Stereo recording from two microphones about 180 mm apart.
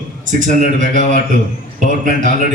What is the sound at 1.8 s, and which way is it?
Speech, 45° right (ahead or behind).